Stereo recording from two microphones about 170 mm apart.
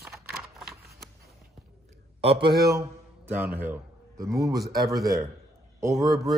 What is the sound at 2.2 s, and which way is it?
Speech, 30° right (ahead or behind).